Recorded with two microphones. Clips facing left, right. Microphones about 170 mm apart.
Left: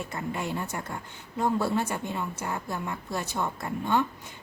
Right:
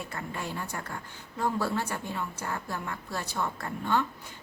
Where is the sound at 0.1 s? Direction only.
20° left (ahead or behind).